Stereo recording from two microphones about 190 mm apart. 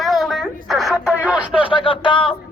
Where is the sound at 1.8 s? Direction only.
25° left (ahead or behind).